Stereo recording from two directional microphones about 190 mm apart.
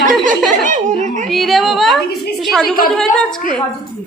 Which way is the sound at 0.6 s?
40° right (ahead or behind).